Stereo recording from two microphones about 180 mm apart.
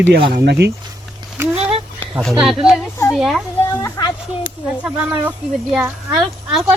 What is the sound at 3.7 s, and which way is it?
Speech, 25° left (ahead or behind).